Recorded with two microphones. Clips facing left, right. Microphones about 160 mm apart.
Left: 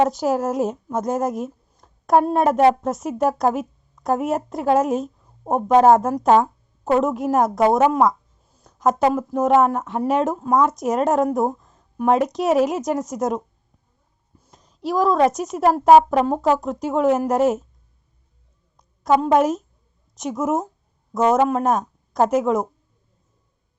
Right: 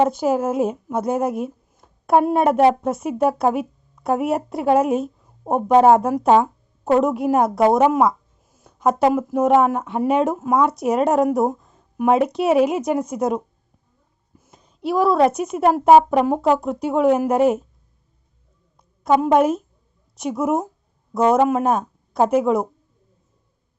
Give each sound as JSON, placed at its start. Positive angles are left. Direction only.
{"t": 0.2, "sound": "speech", "side_deg": -5}
{"t": 6.9, "sound": "a woman's voice", "side_deg": 0}
{"t": 14.5, "sound": "a sound", "side_deg": -5}
{"t": 15.4, "sound": "speech", "side_deg": -5}
{"t": 18.8, "sound": "a woman's voice", "side_deg": -5}